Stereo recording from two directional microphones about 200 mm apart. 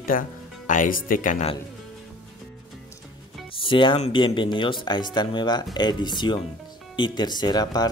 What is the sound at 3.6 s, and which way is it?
Speech, 25° left (ahead or behind).